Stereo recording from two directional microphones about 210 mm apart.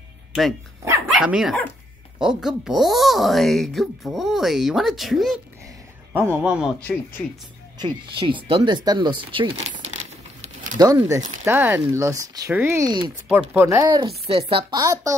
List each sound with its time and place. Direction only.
0.8 s speech: 10° right (ahead or behind)
6.8 s speech: 10° left (ahead or behind)
7.8 s speech: 25° right (ahead or behind)
9.7 s crumpling: 30° right (ahead or behind)
10.8 s speech: 15° right (ahead or behind)